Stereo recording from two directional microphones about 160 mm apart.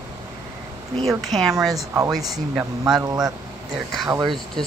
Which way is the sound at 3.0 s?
20° right (ahead or behind).